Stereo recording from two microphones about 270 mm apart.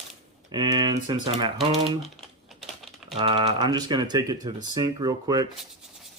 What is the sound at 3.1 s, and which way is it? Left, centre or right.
Speech, centre.